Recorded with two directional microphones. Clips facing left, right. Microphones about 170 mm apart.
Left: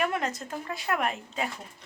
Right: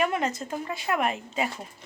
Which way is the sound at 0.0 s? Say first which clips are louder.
Right 3 dB; centre (ahead or behind).